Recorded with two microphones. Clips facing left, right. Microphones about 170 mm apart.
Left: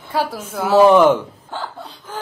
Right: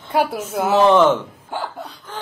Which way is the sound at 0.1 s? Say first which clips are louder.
Right 2 dB; 20° right (ahead or behind).